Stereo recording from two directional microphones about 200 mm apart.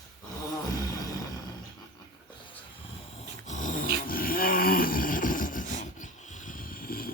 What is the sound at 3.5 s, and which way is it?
Dog, 40° left (ahead or behind).